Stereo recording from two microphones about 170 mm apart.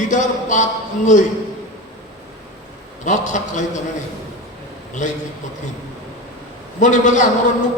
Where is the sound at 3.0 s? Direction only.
45° left (ahead or behind).